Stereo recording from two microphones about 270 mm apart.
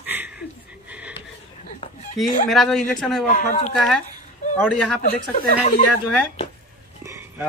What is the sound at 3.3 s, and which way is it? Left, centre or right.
Speech, left.